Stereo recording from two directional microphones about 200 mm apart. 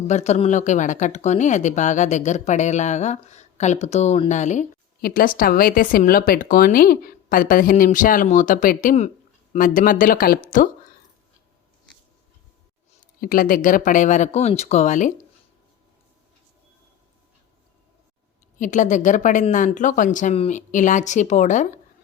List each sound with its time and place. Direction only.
0.1 s speech: 35° left (ahead or behind)
12.9 s speech: 45° left (ahead or behind)
18.6 s speech: 40° left (ahead or behind)